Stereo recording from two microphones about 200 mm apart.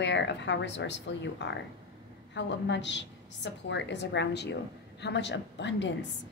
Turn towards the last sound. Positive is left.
turn(degrees=65)  # may be behind; listen again after turning